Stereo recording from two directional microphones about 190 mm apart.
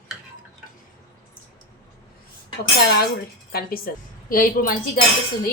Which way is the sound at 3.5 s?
50° left (ahead or behind).